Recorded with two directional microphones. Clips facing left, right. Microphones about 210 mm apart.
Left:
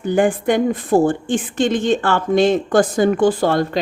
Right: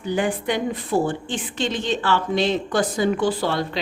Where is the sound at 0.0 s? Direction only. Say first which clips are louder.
Left 7 dB; 50° left (ahead or behind).